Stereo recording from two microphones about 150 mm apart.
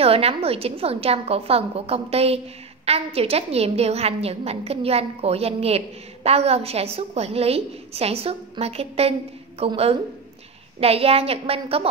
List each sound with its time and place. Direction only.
0.0 s a woman's voice: 40° right (ahead or behind)